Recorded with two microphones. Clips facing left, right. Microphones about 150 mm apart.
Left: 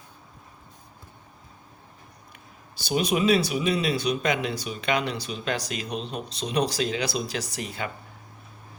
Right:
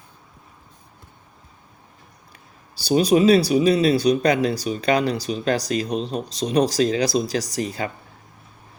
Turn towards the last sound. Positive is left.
turn(degrees=-35)  # may be behind; listen again after turning